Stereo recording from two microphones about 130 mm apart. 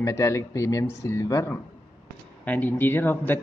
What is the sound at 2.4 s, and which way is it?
Speech, 10° left (ahead or behind).